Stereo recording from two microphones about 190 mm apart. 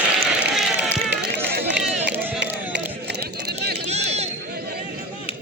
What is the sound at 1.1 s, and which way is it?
Run, 60° right (ahead or behind).